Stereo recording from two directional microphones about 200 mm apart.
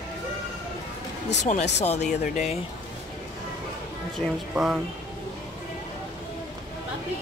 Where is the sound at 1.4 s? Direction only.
35° left (ahead or behind).